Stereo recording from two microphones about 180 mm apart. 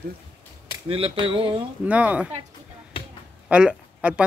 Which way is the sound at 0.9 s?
30° right (ahead or behind).